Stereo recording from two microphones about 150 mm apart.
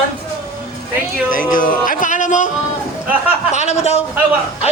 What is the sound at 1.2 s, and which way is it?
Speech, 65° left (ahead or behind).